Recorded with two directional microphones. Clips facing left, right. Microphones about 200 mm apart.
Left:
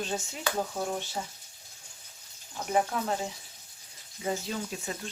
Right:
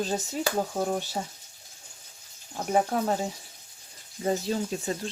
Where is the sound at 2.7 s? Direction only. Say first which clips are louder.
Right 3 dB; 40° right (ahead or behind).